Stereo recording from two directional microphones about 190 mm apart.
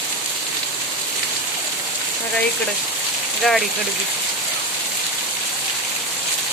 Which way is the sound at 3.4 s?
Centre (ahead or behind).